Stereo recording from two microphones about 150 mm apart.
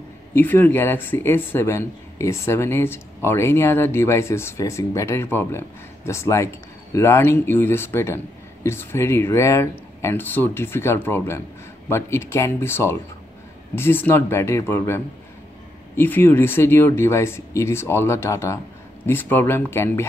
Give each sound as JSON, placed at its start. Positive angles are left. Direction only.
{"t": 0.3, "sound": "speech", "side_deg": 15}
{"t": 16.0, "sound": "speech", "side_deg": 15}